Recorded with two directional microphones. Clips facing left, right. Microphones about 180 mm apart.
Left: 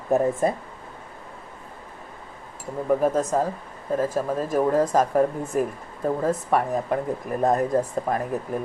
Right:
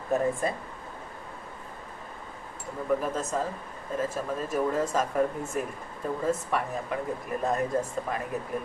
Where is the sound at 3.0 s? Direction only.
40° left (ahead or behind).